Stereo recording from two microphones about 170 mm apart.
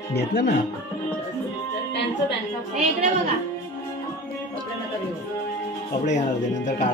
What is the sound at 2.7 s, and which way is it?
Speech, 40° right (ahead or behind).